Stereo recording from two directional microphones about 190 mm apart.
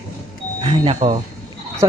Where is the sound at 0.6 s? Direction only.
25° right (ahead or behind).